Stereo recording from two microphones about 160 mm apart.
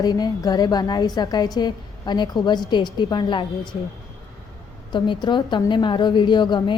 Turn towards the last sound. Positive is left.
turn(degrees=30)  # may be behind; listen again after turning